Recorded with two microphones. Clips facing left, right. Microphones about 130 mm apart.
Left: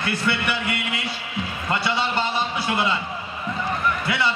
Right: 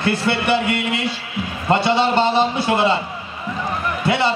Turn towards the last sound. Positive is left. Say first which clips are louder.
# right 6 dB
turn(degrees=-30)  # may be behind; listen again after turning